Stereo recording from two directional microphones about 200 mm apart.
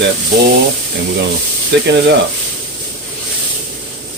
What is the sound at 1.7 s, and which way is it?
Speech, 60° right (ahead or behind).